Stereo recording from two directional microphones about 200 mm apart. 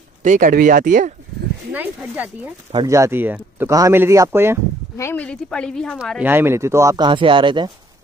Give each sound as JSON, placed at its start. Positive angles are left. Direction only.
{"t": 0.2, "sound": "speech", "side_deg": -40}
{"t": 1.7, "sound": "speech", "side_deg": -10}
{"t": 4.9, "sound": "speech", "side_deg": 10}